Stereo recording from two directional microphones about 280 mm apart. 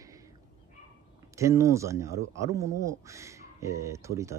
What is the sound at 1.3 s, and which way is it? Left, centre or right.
Speech, centre.